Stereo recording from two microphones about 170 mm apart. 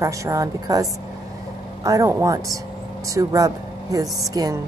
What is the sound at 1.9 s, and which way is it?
A woman's voice, 20° right (ahead or behind).